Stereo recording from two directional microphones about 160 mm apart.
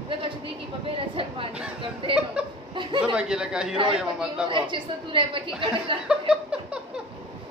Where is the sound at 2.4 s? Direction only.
10° right (ahead or behind).